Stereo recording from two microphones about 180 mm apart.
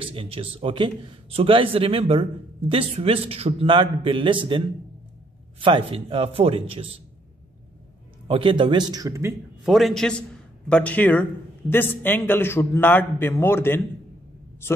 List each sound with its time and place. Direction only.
0.0 s a man's voice: 30° right (ahead or behind)
8.3 s a man's voice: 30° right (ahead or behind)
9.7 s a man's voice: centre (ahead or behind)